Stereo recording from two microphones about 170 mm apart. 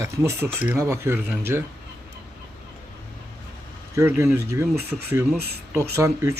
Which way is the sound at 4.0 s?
15° right (ahead or behind).